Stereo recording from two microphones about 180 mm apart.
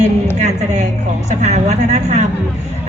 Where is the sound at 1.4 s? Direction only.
40° right (ahead or behind).